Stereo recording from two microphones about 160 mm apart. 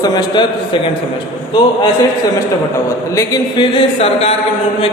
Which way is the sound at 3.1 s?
25° left (ahead or behind).